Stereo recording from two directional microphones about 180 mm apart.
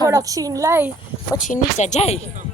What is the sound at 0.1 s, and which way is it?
Speech, 20° right (ahead or behind).